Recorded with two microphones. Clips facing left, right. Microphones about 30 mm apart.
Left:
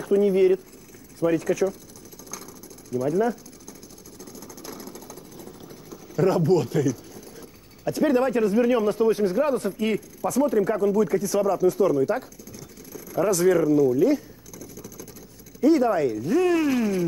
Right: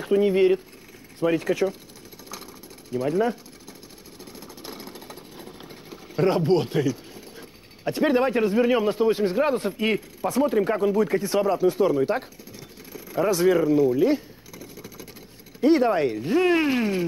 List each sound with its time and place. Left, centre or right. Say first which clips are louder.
0.0 s speech: even; right
2.3 s jackhammer: even; right
4.2 s a sound: even; right
15.6 s speech: even; right